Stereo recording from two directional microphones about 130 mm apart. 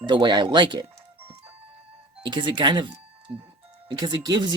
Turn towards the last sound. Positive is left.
turn(degrees=-30)  # may be behind; listen again after turning